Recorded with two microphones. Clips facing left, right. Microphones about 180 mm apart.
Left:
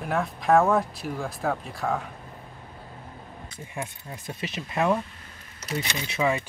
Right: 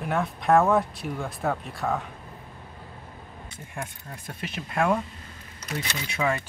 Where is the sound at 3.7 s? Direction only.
5° left (ahead or behind).